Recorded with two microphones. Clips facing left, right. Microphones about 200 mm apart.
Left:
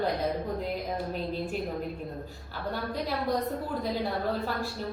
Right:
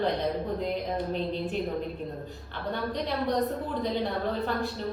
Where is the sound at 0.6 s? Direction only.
5° left (ahead or behind).